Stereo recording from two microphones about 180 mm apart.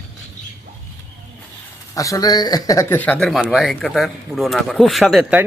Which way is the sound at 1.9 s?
20° left (ahead or behind).